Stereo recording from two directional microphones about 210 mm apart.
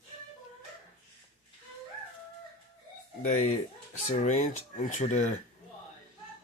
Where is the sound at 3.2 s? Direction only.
35° left (ahead or behind).